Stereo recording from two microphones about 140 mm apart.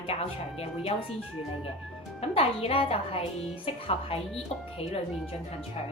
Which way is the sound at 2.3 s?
40° left (ahead or behind).